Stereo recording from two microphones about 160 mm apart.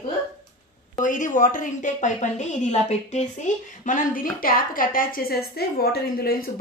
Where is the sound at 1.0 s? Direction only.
55° left (ahead or behind).